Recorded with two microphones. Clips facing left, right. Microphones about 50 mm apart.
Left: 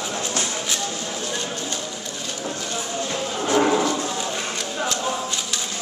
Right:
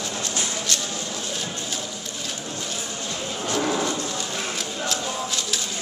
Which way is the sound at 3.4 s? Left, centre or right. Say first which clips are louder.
Left 6 dB; left.